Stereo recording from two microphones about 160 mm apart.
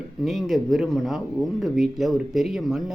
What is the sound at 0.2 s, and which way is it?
Speech, centre (ahead or behind).